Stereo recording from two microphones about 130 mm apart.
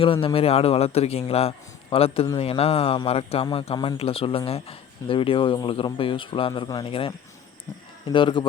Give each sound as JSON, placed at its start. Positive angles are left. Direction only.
{"t": 0.0, "sound": "speech", "side_deg": 45}
{"t": 6.8, "sound": "speech", "side_deg": 45}
{"t": 8.1, "sound": "speech", "side_deg": 40}